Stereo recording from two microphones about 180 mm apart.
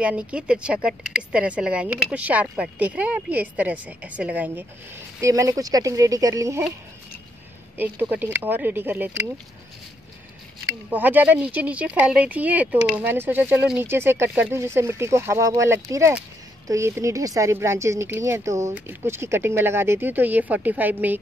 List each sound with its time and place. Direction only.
0.0 s speech: 5° right (ahead or behind)
7.7 s speech: 10° right (ahead or behind)
10.9 s speech: 10° right (ahead or behind)